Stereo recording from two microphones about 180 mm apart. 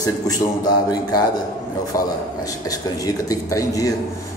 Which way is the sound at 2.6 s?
20° left (ahead or behind).